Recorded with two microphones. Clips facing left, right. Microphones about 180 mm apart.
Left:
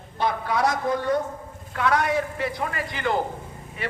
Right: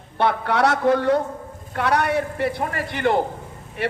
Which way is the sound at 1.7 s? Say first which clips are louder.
Right 2 dB; 60° right (ahead or behind).